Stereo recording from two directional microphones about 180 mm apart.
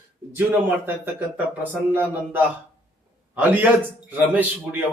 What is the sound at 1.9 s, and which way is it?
Speech, 10° right (ahead or behind).